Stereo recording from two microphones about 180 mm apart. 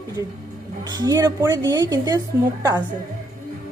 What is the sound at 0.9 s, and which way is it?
Speech, 20° right (ahead or behind).